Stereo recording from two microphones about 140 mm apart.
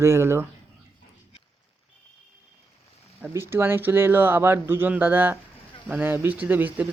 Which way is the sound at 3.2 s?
15° right (ahead or behind).